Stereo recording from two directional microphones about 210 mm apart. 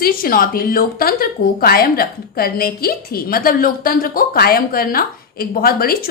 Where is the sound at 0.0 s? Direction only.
45° left (ahead or behind).